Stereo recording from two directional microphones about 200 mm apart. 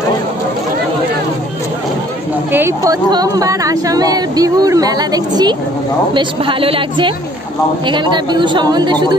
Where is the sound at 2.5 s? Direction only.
15° right (ahead or behind).